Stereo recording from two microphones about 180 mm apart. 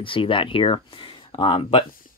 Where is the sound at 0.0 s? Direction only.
30° left (ahead or behind).